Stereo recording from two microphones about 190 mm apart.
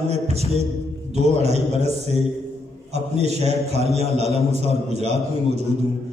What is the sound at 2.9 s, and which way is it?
A man's voice, 35° right (ahead or behind).